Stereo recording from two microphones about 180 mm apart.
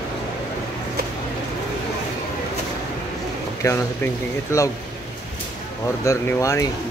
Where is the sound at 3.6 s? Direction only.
15° left (ahead or behind).